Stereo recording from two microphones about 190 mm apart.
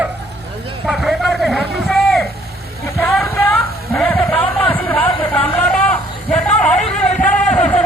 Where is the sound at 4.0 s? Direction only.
5° left (ahead or behind).